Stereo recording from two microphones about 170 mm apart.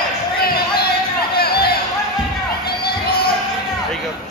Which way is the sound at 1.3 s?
65° left (ahead or behind).